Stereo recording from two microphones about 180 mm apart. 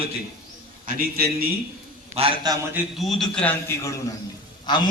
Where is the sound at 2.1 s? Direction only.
30° right (ahead or behind).